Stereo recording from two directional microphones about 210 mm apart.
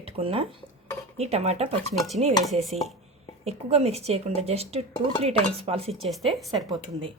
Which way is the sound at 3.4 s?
30° right (ahead or behind).